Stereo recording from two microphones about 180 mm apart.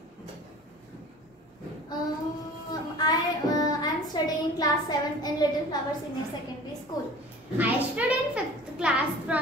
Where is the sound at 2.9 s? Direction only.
20° left (ahead or behind).